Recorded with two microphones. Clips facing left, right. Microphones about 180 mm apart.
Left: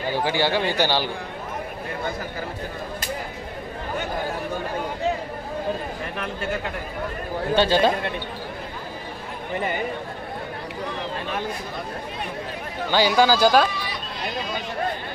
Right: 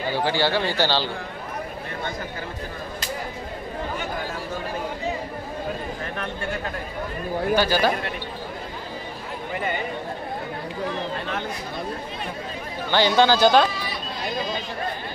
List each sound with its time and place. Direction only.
0.1 s speech: 15° left (ahead or behind)
7.5 s speech: 25° left (ahead or behind)
12.9 s speech: 10° left (ahead or behind)